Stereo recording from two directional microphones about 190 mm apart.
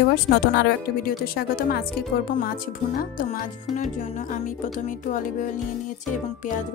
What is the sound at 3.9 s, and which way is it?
Music, 40° left (ahead or behind).